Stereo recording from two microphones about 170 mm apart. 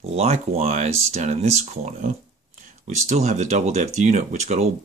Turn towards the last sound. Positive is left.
turn(degrees=-40)  # may be behind; listen again after turning